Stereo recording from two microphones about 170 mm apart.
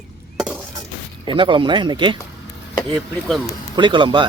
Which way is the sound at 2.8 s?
Centre (ahead or behind).